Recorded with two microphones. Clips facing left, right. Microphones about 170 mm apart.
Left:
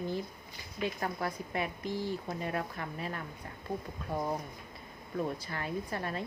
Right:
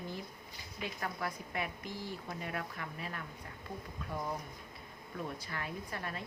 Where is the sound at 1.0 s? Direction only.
30° left (ahead or behind).